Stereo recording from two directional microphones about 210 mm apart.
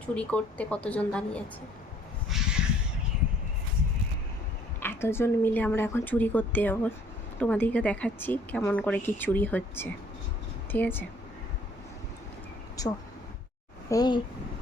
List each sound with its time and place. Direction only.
0.0 s speech: 5° left (ahead or behind)
2.3 s crow: centre (ahead or behind)
4.8 s speech: 10° left (ahead or behind)
12.8 s speech: 15° left (ahead or behind)